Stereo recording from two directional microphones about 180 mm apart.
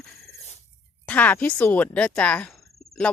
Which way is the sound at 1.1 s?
10° left (ahead or behind).